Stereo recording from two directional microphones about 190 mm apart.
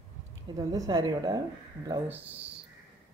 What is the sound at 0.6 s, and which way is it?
Speech, 20° right (ahead or behind).